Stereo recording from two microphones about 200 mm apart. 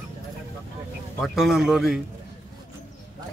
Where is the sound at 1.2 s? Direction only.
Centre (ahead or behind).